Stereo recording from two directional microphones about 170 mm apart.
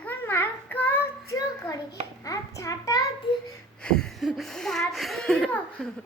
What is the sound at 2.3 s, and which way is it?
Speech, 20° left (ahead or behind).